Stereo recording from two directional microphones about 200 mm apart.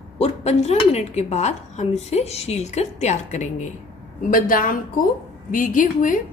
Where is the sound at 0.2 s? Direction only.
35° left (ahead or behind).